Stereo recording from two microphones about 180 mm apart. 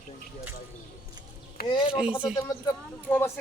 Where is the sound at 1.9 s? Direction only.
5° right (ahead or behind).